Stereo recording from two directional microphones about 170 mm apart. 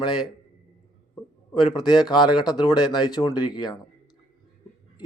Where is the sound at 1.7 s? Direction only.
25° left (ahead or behind).